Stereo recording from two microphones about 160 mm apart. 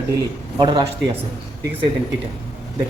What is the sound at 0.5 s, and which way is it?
Speech, 30° right (ahead or behind).